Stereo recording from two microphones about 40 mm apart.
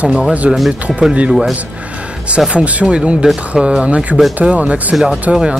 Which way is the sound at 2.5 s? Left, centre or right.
Right.